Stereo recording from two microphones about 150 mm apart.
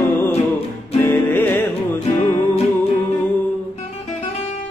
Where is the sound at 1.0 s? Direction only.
15° left (ahead or behind).